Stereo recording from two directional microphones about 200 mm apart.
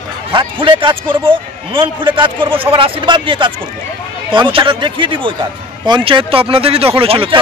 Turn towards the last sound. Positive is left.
turn(degrees=-25)  # may be behind; listen again after turning